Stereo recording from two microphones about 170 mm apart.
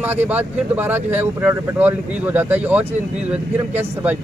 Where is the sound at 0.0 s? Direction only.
10° right (ahead or behind).